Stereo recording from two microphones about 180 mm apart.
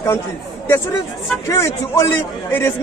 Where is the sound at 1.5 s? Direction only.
20° left (ahead or behind).